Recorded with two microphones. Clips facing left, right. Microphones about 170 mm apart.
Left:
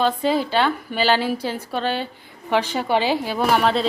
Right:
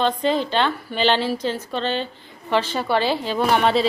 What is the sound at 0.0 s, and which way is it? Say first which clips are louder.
A woman's voice: left 1 dB; 5° left (ahead or behind).